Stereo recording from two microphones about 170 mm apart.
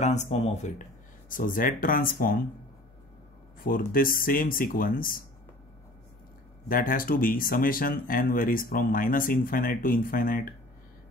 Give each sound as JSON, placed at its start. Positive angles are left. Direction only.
{"t": 0.0, "sound": "speech", "side_deg": 45}
{"t": 1.3, "sound": "speech", "side_deg": 55}
{"t": 3.6, "sound": "speech", "side_deg": 55}
{"t": 6.7, "sound": "speech", "side_deg": 55}